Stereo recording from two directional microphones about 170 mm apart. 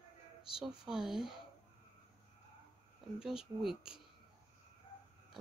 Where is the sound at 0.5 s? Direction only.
5° right (ahead or behind).